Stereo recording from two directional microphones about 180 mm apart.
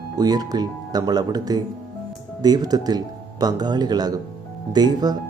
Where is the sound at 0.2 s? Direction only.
20° right (ahead or behind).